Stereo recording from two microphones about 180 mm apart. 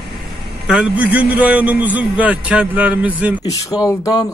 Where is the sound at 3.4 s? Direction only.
20° left (ahead or behind).